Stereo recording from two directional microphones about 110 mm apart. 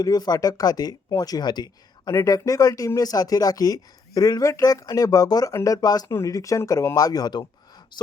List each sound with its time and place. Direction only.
0.0 s speech: 35° left (ahead or behind)